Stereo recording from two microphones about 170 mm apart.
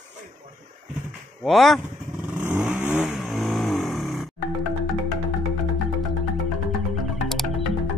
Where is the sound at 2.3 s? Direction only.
10° right (ahead or behind).